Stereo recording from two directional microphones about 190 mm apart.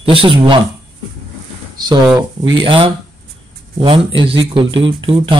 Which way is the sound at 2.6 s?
25° right (ahead or behind).